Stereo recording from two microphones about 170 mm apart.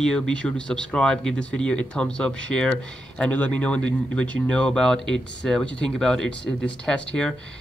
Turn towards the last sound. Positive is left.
turn(degrees=5)  # may be behind; listen again after turning